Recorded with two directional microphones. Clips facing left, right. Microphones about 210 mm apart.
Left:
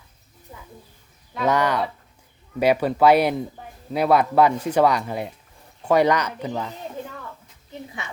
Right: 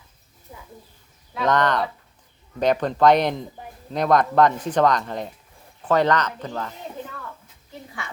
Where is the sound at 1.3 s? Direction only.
10° left (ahead or behind).